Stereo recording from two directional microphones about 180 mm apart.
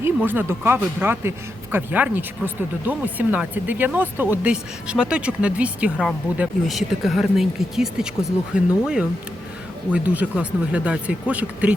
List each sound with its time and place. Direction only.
0.0 s speech: 10° right (ahead or behind)
9.9 s speech: 10° right (ahead or behind)